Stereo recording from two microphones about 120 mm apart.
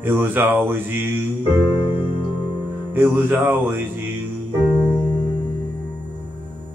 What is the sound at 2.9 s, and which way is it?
Mantra, 20° right (ahead or behind).